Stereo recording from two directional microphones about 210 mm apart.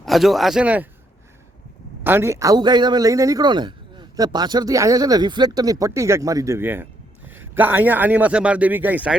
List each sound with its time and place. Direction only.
0.0 s speech: centre (ahead or behind)
2.0 s speech: 10° right (ahead or behind)